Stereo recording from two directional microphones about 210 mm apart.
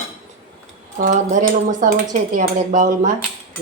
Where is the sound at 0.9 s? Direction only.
40° right (ahead or behind).